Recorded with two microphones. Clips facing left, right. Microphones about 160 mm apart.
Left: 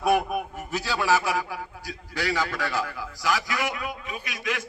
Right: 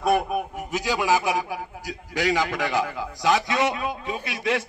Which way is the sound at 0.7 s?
15° right (ahead or behind).